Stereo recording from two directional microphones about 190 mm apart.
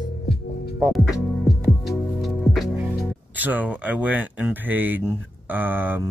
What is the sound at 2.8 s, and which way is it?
Speech, 10° right (ahead or behind).